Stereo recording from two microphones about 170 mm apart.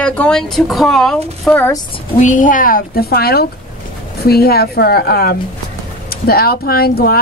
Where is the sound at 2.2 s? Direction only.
50° left (ahead or behind).